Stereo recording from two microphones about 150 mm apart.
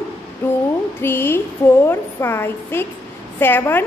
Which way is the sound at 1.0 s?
15° left (ahead or behind).